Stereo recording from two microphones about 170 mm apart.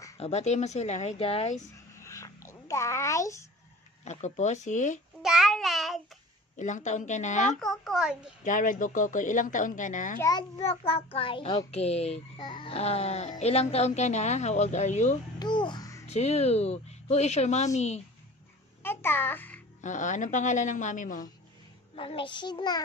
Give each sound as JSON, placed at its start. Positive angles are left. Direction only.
{"t": 0.2, "sound": "a woman's voice", "side_deg": 40}
{"t": 2.0, "sound": "a sound", "side_deg": 15}
{"t": 4.0, "sound": "a woman's voice", "side_deg": 45}
{"t": 5.2, "sound": "child singing", "side_deg": -5}
{"t": 6.5, "sound": "a woman's voice", "side_deg": 45}
{"t": 7.6, "sound": "a child's voice", "side_deg": 0}
{"t": 8.5, "sound": "a woman's voice", "side_deg": 50}
{"t": 10.6, "sound": "a woman's voice", "side_deg": 35}
{"t": 12.4, "sound": "a woman's voice", "side_deg": 25}
{"t": 15.3, "sound": "a child's voice", "side_deg": 25}
{"t": 16.1, "sound": "a woman's voice", "side_deg": 40}
{"t": 18.8, "sound": "a child's voice", "side_deg": 15}
{"t": 19.8, "sound": "a woman's voice", "side_deg": 45}
{"t": 21.9, "sound": "a child's voice", "side_deg": 30}